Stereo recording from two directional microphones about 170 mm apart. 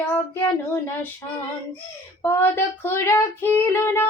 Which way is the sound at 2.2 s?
15° left (ahead or behind).